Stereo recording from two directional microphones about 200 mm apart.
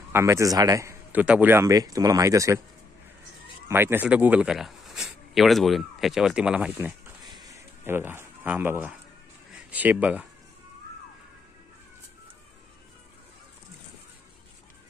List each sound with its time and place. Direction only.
0.1 s a man's voice: 15° right (ahead or behind)
3.6 s speech: 10° right (ahead or behind)
7.4 s a sound: 15° right (ahead or behind)
9.5 s speech: 5° right (ahead or behind)